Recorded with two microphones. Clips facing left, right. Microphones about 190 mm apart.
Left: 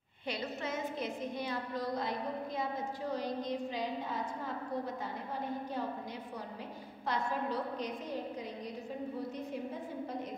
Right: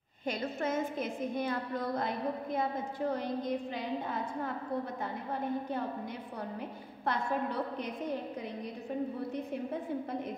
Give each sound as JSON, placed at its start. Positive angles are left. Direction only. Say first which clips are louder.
{"t": 0.3, "sound": "a woman's voice", "louder": "right 4 dB", "side_deg": -50}
{"t": 7.1, "sound": "a woman's voice", "louder": "right 2 dB", "side_deg": -55}